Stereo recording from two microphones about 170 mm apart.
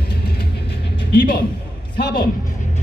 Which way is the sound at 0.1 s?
70° left (ahead or behind).